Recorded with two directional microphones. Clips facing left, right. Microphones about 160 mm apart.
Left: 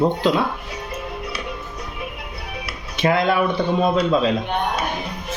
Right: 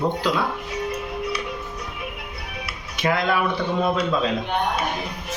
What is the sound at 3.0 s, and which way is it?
Speech, 30° left (ahead or behind).